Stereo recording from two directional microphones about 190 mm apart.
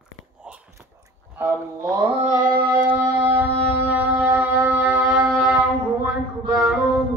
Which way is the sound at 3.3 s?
10° right (ahead or behind).